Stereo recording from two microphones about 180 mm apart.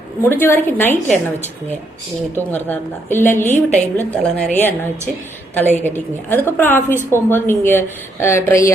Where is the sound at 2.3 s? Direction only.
10° left (ahead or behind).